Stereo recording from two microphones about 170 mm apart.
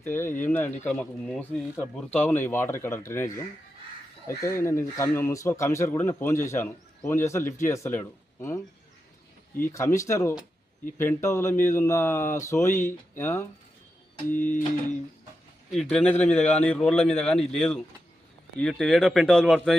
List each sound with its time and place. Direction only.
0.0 s speech: 15° left (ahead or behind)
15.7 s speech: centre (ahead or behind)